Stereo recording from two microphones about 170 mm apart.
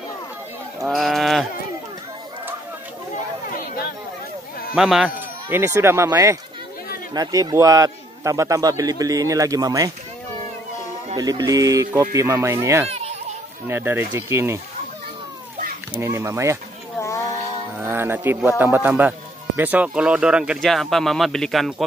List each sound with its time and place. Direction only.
0.7 s speech: centre (ahead or behind)
4.7 s speech: 5° right (ahead or behind)
5.5 s a man's voice: 15° right (ahead or behind)
11.1 s a man's voice: 20° right (ahead or behind)
12.8 s a sound: 35° right (ahead or behind)
13.7 s speech: 15° right (ahead or behind)
15.9 s speech: 15° right (ahead or behind)
17.7 s speech: 15° right (ahead or behind)